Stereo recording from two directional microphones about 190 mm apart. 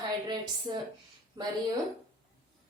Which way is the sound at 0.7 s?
25° right (ahead or behind).